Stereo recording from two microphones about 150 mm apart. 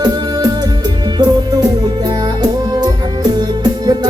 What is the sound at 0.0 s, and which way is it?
Music, 30° right (ahead or behind).